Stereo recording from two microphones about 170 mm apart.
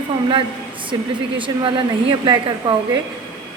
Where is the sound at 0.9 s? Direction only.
25° right (ahead or behind).